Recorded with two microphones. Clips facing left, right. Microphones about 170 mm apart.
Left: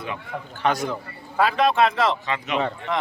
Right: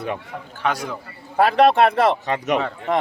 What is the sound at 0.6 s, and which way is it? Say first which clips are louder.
Speech: left 1 dB; 5° right (ahead or behind).